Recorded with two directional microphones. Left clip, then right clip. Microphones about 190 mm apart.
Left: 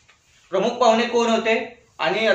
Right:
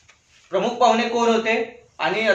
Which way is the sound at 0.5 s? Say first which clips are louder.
Even; 10° left (ahead or behind).